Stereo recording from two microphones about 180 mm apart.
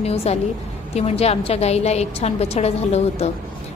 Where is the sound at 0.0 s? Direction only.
35° left (ahead or behind).